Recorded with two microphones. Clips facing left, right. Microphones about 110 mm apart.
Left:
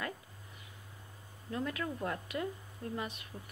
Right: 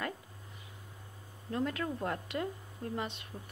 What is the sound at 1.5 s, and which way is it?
Speech, 35° right (ahead or behind).